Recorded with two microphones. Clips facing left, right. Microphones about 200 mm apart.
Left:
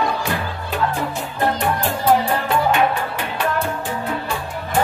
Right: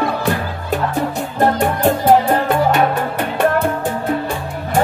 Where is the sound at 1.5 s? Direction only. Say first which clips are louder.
Right 6 dB; 50° right (ahead or behind).